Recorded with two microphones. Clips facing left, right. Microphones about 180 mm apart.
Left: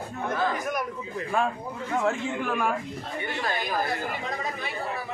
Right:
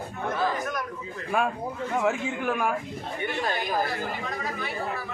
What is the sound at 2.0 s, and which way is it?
Speech, 5° right (ahead or behind).